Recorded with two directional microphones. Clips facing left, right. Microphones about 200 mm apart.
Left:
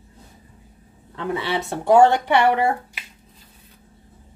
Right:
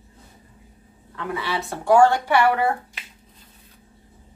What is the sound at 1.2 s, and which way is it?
Speech, 25° left (ahead or behind).